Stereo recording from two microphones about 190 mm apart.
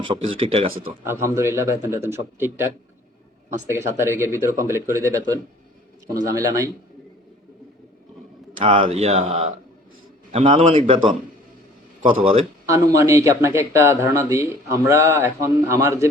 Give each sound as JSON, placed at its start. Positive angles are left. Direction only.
{"t": 0.3, "sound": "speech", "side_deg": -30}
{"t": 1.0, "sound": "speech", "side_deg": -15}
{"t": 3.7, "sound": "speech", "side_deg": -15}
{"t": 8.6, "sound": "speech", "side_deg": -30}
{"t": 12.2, "sound": "speech", "side_deg": -30}
{"t": 12.6, "sound": "speech", "side_deg": -15}